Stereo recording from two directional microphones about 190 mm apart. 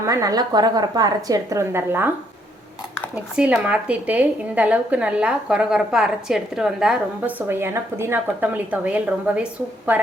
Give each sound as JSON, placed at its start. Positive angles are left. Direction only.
{"t": 0.0, "sound": "speech", "side_deg": -15}
{"t": 3.3, "sound": "speech", "side_deg": -5}